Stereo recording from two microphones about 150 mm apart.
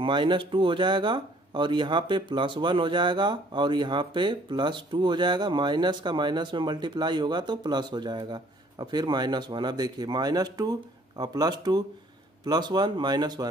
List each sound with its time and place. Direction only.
0.0 s speech: 35° right (ahead or behind)